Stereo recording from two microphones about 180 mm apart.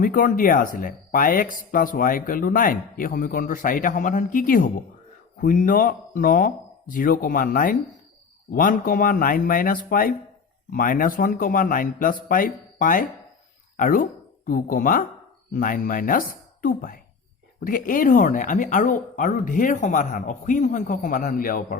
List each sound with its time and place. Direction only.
0.0 s speech: 50° left (ahead or behind)